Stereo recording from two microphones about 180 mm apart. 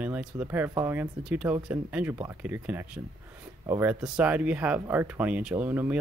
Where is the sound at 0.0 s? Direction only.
10° right (ahead or behind).